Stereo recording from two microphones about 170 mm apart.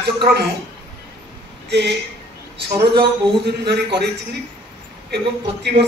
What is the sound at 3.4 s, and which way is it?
Speech, 75° right (ahead or behind).